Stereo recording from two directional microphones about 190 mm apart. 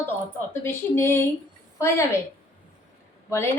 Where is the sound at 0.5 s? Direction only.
15° left (ahead or behind).